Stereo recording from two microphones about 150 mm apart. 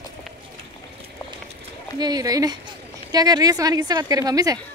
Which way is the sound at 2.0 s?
25° right (ahead or behind).